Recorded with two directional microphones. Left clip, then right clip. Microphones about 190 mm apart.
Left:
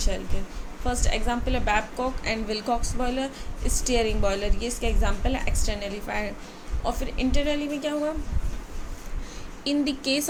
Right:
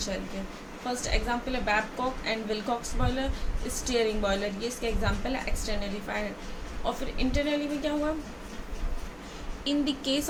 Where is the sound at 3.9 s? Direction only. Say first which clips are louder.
Left 2 dB; 35° left (ahead or behind).